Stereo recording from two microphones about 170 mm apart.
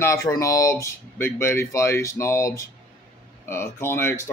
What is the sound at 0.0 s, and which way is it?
Speech, 20° left (ahead or behind).